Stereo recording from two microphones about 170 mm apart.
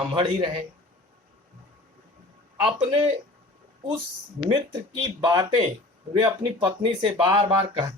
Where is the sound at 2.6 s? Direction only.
30° right (ahead or behind).